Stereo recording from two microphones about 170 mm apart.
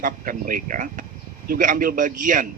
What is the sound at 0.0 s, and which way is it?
Speech, 55° right (ahead or behind).